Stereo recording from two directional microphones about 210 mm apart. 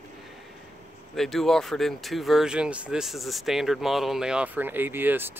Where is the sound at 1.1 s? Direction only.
Centre (ahead or behind).